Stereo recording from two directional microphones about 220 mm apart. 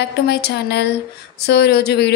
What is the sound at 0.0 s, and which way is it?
Speech, 50° left (ahead or behind).